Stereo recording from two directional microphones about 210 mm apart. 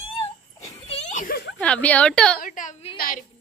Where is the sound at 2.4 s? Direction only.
40° left (ahead or behind).